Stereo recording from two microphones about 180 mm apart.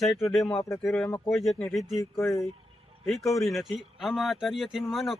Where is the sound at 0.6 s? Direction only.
15° left (ahead or behind).